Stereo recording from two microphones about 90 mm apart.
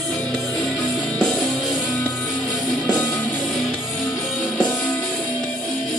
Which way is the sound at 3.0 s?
20° left (ahead or behind).